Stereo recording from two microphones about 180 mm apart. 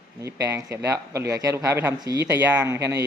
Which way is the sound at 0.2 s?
15° right (ahead or behind).